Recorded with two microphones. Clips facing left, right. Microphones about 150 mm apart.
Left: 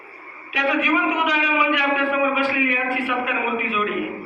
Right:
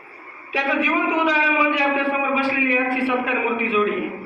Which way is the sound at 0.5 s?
30° right (ahead or behind).